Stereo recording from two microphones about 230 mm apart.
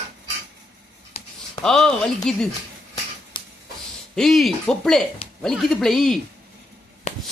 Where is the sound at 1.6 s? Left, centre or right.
Centre.